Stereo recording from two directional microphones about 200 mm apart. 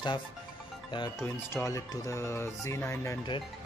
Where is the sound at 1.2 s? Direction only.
15° left (ahead or behind).